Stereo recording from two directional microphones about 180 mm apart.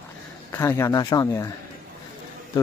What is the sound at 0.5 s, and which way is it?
Speech, 15° left (ahead or behind).